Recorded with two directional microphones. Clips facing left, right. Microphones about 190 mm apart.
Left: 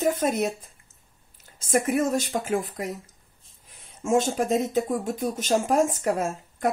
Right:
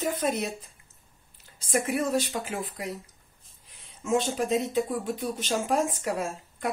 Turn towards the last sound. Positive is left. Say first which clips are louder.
# left 4 dB
turn(degrees=45)  # may be behind; listen again after turning